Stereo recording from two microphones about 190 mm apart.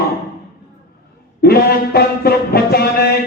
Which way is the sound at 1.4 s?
55° left (ahead or behind).